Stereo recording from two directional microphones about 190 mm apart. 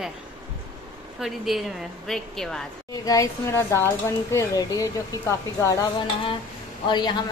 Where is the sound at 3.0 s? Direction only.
15° left (ahead or behind).